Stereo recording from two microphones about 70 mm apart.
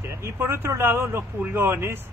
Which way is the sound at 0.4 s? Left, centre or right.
Right.